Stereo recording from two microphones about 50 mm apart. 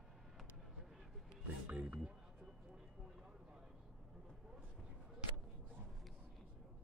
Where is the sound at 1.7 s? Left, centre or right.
Right.